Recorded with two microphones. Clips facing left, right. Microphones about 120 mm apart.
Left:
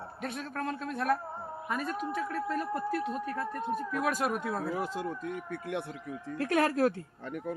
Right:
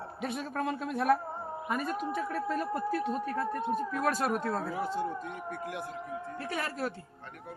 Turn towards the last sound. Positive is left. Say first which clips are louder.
# left 8 dB
turn(degrees=60)  # may be behind; listen again after turning